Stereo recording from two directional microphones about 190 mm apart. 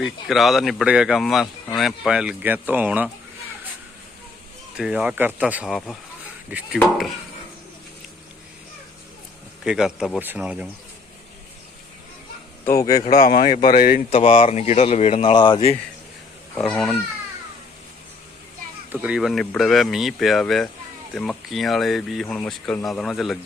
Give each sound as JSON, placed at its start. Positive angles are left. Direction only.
{"t": 0.0, "sound": "speech", "side_deg": 0}
{"t": 4.8, "sound": "speech", "side_deg": -5}
{"t": 9.6, "sound": "speech", "side_deg": -5}
{"t": 12.6, "sound": "speech", "side_deg": 20}
{"t": 13.1, "sound": "speech", "side_deg": 45}
{"t": 14.1, "sound": "speech", "side_deg": 35}
{"t": 16.6, "sound": "speech", "side_deg": 5}
{"t": 18.9, "sound": "speech", "side_deg": -5}